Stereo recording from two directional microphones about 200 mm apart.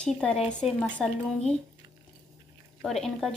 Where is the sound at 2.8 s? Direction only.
Centre (ahead or behind).